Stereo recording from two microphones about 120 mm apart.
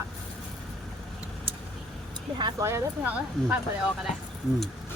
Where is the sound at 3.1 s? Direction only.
10° right (ahead or behind).